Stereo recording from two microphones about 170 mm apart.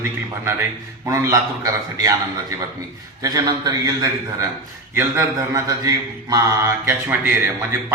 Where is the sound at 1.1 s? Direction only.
20° right (ahead or behind).